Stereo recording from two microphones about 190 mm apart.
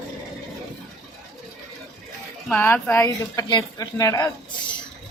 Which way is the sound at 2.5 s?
10° left (ahead or behind).